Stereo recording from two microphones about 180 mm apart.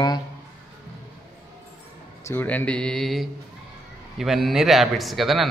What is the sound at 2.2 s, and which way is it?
Speech, 10° left (ahead or behind).